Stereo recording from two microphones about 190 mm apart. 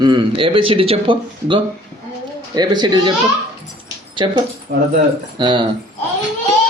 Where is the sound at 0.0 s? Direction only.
25° right (ahead or behind).